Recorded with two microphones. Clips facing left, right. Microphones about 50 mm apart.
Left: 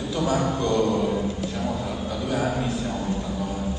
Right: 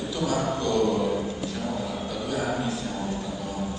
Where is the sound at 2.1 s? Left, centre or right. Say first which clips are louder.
Left 5 dB; left.